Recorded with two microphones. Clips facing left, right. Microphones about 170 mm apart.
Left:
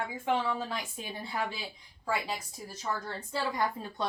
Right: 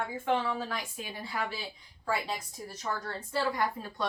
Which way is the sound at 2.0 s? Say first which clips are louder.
Even; 10° left (ahead or behind).